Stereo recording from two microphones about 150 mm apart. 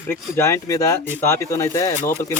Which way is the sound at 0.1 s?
20° left (ahead or behind).